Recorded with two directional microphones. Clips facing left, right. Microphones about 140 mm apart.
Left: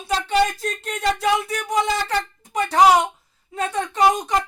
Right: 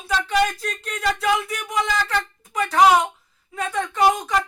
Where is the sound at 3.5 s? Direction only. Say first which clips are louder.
Left 1 dB; 25° left (ahead or behind).